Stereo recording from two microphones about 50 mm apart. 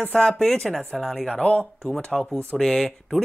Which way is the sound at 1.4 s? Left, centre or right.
Left.